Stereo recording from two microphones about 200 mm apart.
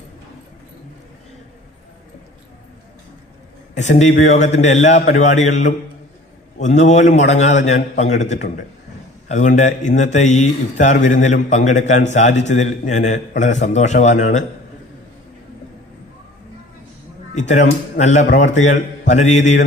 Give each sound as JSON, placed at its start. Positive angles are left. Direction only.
{"t": 3.8, "sound": "speech", "side_deg": 35}
{"t": 8.4, "sound": "a man's voice", "side_deg": 45}
{"t": 17.3, "sound": "speech", "side_deg": 35}